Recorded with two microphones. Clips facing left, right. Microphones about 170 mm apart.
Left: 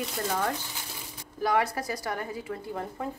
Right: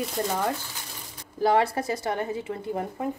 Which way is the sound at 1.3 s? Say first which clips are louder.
Right 4 dB; 30° right (ahead or behind).